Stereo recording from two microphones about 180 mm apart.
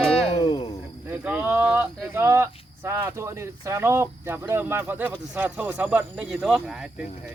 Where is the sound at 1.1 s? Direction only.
10° right (ahead or behind).